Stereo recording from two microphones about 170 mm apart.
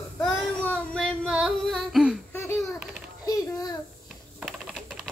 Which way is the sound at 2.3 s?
15° left (ahead or behind).